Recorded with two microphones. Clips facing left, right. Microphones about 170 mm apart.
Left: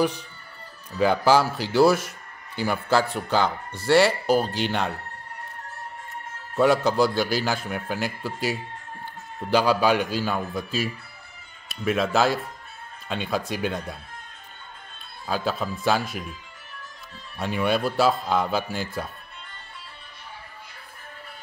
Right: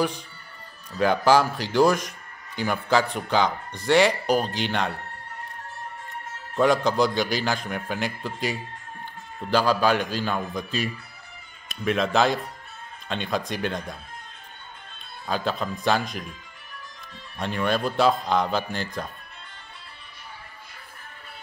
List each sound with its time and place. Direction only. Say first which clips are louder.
0.9 s a man's voice: even; 10° left (ahead or behind)
2.0 s a sound: even; 10° left (ahead or behind)
3.8 s a man's voice: left 1 dB; 5° left (ahead or behind)
4.1 s speech: left 1 dB; 15° right (ahead or behind)
4.6 s a man's voice: even; 10° left (ahead or behind)
6.5 s a man's voice: left 1 dB; 10° left (ahead or behind)
15.2 s a man's voice: even; 5° left (ahead or behind)
17.4 s a man's voice: left 1 dB; 10° left (ahead or behind)